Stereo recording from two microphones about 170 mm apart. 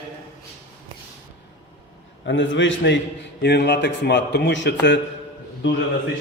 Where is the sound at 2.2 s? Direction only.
90° left.